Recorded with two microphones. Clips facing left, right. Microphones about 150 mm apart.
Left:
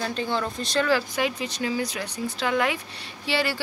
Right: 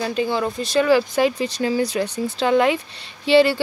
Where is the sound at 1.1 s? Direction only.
35° right (ahead or behind).